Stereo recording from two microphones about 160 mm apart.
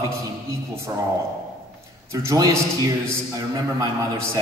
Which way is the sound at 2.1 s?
20° right (ahead or behind).